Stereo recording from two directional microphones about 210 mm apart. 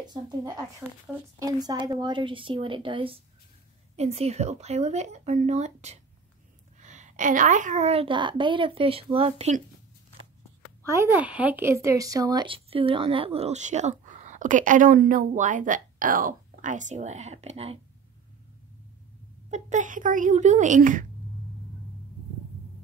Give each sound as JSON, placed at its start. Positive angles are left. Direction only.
{"t": 0.0, "sound": "a woman's voice", "side_deg": -20}
{"t": 10.9, "sound": "speech", "side_deg": -10}
{"t": 19.5, "sound": "speech", "side_deg": -35}